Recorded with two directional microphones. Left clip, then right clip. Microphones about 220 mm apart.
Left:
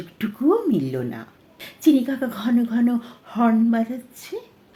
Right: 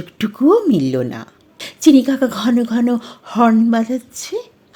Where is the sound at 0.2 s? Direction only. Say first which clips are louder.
Right 7 dB; 40° right (ahead or behind).